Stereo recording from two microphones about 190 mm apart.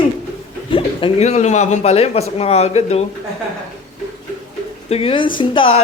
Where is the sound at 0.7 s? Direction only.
30° left (ahead or behind).